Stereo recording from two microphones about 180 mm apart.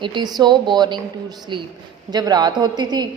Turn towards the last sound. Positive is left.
turn(degrees=-20)  # may be behind; listen again after turning